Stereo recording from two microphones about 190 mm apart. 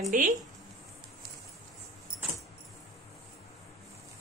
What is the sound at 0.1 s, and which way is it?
Speech, 45° right (ahead or behind).